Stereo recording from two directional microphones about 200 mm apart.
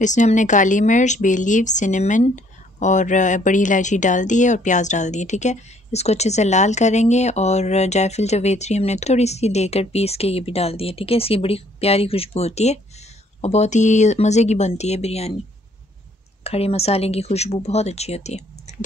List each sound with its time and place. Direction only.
0.0 s speech: 35° left (ahead or behind)
16.4 s speech: 30° left (ahead or behind)